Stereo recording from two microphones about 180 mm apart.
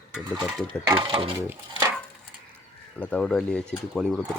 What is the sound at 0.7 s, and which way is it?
Speech, 25° right (ahead or behind).